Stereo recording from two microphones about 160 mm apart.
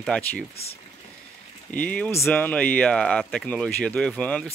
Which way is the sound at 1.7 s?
10° left (ahead or behind).